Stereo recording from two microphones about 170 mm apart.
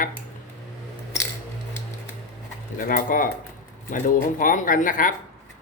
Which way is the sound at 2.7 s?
55° left (ahead or behind).